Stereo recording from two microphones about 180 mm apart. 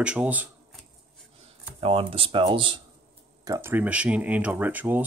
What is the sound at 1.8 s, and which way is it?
Speech, 30° right (ahead or behind).